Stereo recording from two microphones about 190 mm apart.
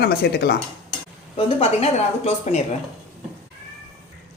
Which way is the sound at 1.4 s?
30° left (ahead or behind).